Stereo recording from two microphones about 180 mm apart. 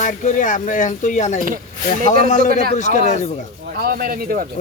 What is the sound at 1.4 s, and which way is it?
Speech, 50° right (ahead or behind).